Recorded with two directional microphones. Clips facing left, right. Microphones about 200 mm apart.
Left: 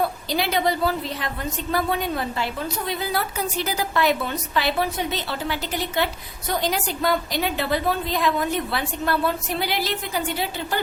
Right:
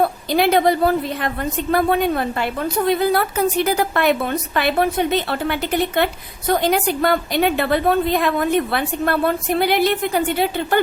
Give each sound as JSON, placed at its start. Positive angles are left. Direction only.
{"t": 0.0, "sound": "a woman's voice", "side_deg": -55}